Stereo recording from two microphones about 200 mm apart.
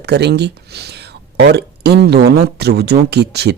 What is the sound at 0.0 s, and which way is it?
Speech, 55° right (ahead or behind).